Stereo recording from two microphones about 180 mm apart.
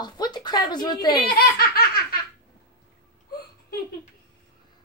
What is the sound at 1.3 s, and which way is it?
Speech, 55° left (ahead or behind).